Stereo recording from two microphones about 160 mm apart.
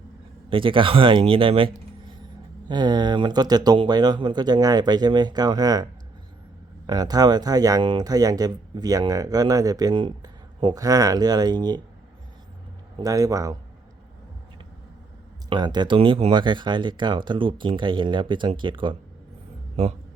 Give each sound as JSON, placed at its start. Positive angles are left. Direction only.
{"t": 0.5, "sound": "speech", "side_deg": -30}
{"t": 13.0, "sound": "speech", "side_deg": -20}
{"t": 15.4, "sound": "speech", "side_deg": -25}